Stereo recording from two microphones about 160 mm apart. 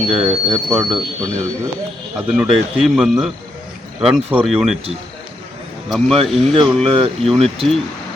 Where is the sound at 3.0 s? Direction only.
5° right (ahead or behind).